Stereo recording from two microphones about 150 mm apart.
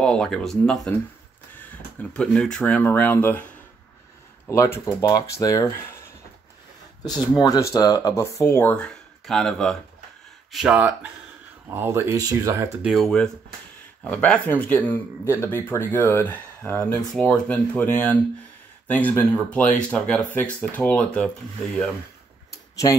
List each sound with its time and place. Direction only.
0.0 s speech: 5° left (ahead or behind)
4.5 s speech: 15° left (ahead or behind)
7.3 s speech: 25° left (ahead or behind); by 12.7 s 20° right (ahead or behind)
12.8 s speech: centre (ahead or behind)